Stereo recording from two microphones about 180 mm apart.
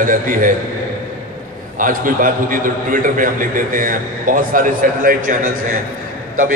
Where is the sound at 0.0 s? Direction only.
50° right (ahead or behind).